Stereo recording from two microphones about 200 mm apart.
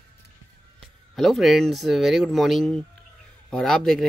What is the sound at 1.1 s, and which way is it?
Speech, centre (ahead or behind).